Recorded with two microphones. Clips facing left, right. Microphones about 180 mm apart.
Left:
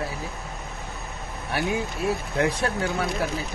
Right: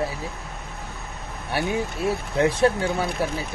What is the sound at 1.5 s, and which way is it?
Speech, 30° right (ahead or behind).